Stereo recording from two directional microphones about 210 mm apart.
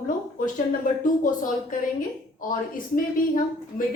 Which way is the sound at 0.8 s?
40° left (ahead or behind).